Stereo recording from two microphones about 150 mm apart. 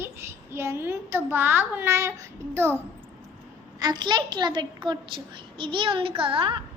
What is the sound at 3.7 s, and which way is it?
A woman's voice, 30° right (ahead or behind).